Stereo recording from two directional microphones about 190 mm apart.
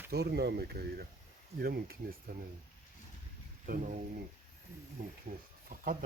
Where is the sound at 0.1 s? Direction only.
55° right (ahead or behind).